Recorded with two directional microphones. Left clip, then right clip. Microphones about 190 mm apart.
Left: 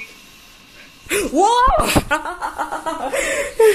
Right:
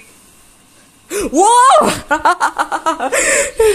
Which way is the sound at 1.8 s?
40° right (ahead or behind).